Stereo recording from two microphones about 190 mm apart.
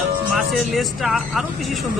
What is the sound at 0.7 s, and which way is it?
Speech, centre (ahead or behind).